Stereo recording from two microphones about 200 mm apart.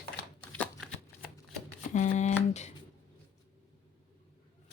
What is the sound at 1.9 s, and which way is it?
Speech, 35° left (ahead or behind).